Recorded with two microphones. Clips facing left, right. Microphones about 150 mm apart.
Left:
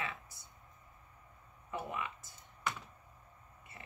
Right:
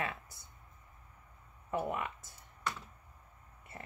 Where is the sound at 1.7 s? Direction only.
50° right (ahead or behind).